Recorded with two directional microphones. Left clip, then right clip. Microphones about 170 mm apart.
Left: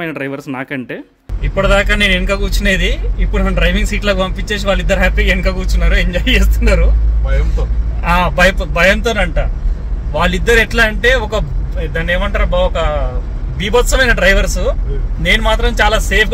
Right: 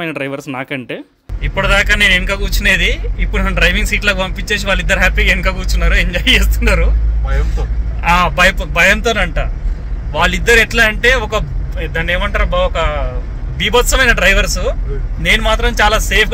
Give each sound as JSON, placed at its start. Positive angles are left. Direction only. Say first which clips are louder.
{"t": 0.0, "sound": "speech", "louder": "right 1 dB", "side_deg": 0}
{"t": 1.4, "sound": "a man's voice", "louder": "even", "side_deg": 25}
{"t": 8.0, "sound": "a man's voice", "louder": "right 1 dB", "side_deg": 25}